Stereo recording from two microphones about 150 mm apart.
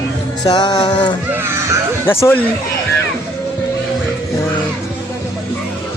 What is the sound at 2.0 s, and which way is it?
Speech, 15° left (ahead or behind).